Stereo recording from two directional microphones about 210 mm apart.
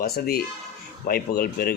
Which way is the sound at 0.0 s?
50° left (ahead or behind).